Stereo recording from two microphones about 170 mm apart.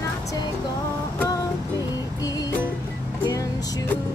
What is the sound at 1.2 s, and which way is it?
Music, 20° left (ahead or behind).